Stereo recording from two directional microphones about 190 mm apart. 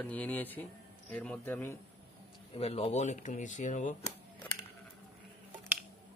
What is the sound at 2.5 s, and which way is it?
Speech, 30° left (ahead or behind).